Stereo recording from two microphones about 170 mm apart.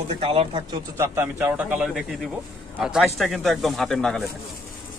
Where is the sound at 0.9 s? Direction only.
15° right (ahead or behind); by 4.2 s 5° left (ahead or behind).